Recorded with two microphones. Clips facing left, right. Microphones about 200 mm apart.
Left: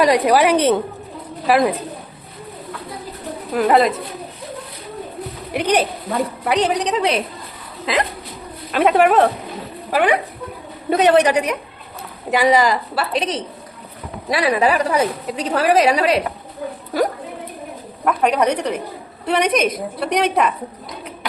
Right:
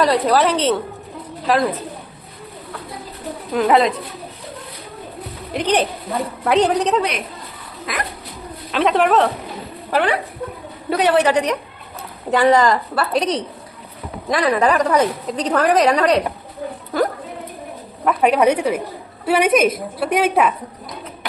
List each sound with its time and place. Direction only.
0.0 s a woman's voice: 10° left (ahead or behind)
3.5 s a woman's voice: centre (ahead or behind)
5.5 s a woman's voice: 10° left (ahead or behind)
7.0 s a woman's voice: 30° left (ahead or behind)
8.7 s a woman's voice: 10° left (ahead or behind)
18.0 s a woman's voice: 5° right (ahead or behind)